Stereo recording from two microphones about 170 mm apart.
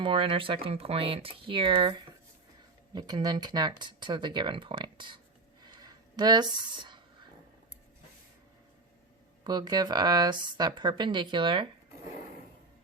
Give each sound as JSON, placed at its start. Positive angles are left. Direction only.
{"t": 0.0, "sound": "speech", "side_deg": -30}
{"t": 5.6, "sound": "a sound", "side_deg": -25}
{"t": 9.4, "sound": "speech", "side_deg": -25}